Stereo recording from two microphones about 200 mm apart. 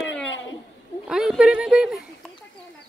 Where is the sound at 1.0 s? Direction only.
5° right (ahead or behind).